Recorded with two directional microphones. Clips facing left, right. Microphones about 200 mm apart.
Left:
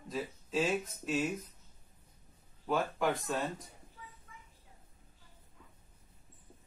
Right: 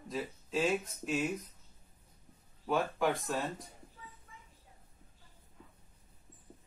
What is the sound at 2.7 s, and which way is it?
Speech, centre (ahead or behind).